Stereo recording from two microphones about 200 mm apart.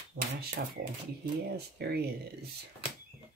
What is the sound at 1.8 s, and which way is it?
Speech, 55° right (ahead or behind).